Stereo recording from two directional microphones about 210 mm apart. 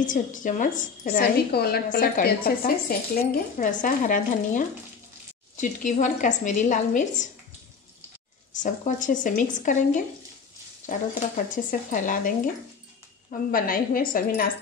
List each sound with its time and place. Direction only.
0.0 s a woman's voice: 40° left (ahead or behind)
8.5 s a woman's voice: 35° left (ahead or behind)